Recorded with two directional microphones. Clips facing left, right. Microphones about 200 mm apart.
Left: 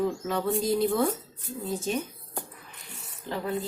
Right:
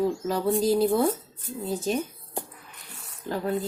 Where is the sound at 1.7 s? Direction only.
35° right (ahead or behind).